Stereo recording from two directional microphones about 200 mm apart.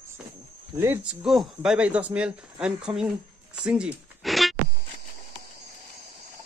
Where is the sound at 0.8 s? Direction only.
10° right (ahead or behind).